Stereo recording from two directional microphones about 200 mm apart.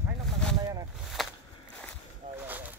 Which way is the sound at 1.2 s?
Centre (ahead or behind).